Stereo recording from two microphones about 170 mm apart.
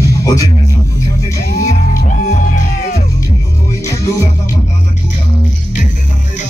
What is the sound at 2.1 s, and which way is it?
Music, 50° left (ahead or behind).